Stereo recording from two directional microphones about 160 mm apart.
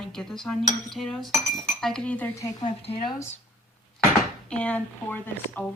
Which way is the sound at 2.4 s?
25° left (ahead or behind).